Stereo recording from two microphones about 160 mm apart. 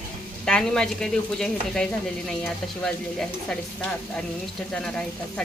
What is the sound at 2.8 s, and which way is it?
A man's voice, 5° left (ahead or behind).